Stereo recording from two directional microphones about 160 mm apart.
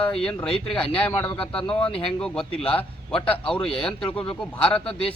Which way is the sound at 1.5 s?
5° left (ahead or behind).